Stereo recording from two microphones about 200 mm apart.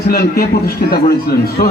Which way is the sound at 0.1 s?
50° left (ahead or behind).